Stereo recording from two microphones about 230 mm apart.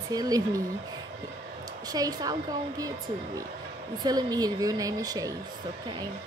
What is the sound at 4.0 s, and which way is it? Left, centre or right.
Speech, centre.